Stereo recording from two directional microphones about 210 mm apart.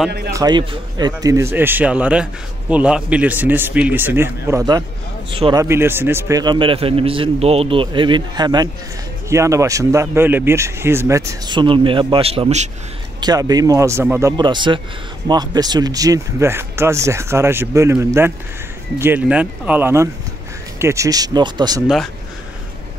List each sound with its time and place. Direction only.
0.3 s speech: 20° right (ahead or behind)
13.2 s speech: 20° right (ahead or behind)
21.8 s speech: centre (ahead or behind)